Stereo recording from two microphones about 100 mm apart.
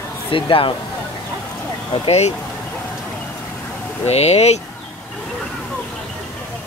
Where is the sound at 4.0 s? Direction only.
90° left.